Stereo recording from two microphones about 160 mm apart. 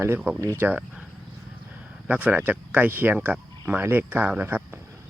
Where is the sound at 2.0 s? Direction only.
10° right (ahead or behind).